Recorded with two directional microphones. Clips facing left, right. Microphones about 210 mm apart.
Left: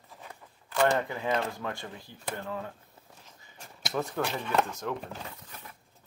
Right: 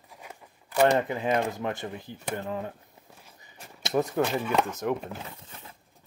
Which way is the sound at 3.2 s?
20° right (ahead or behind).